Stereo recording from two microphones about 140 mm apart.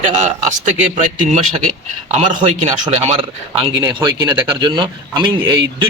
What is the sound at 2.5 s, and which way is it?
Speech, 55° right (ahead or behind).